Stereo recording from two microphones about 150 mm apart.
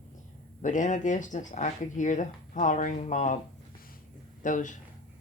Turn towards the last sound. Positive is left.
turn(degrees=60)  # may be behind; listen again after turning